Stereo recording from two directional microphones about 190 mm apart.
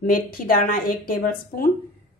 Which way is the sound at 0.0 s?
45° left (ahead or behind).